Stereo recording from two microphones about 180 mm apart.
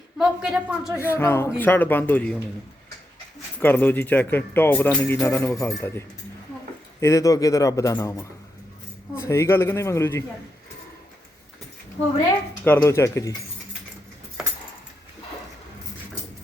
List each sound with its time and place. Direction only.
0.2 s a man's voice: 5° right (ahead or behind)
1.0 s speech: 15° left (ahead or behind)
3.6 s speech: 10° left (ahead or behind)
12.6 s speech: 15° left (ahead or behind)
14.4 s keys jangling: 5° right (ahead or behind)